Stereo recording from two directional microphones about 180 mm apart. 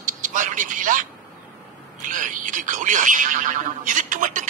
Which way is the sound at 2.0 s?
45° right (ahead or behind).